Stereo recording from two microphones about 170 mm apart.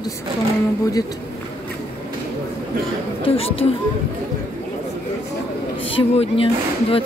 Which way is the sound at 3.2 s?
35° left (ahead or behind).